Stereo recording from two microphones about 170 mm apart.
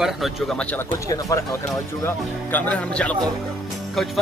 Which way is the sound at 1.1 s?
20° left (ahead or behind).